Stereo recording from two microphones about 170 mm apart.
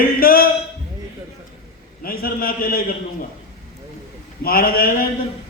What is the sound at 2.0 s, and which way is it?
Speech, 60° left (ahead or behind).